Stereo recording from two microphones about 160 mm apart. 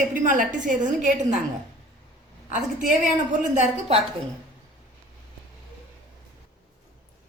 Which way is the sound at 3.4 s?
45° right (ahead or behind).